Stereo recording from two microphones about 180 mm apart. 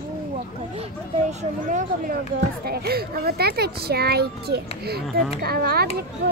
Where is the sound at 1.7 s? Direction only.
45° right (ahead or behind).